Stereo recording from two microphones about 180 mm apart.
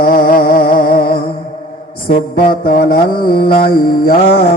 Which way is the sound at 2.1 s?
60° left (ahead or behind).